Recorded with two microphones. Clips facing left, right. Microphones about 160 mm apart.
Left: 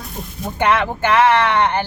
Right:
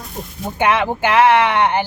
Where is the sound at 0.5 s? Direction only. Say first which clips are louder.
Right 1 dB; 10° right (ahead or behind).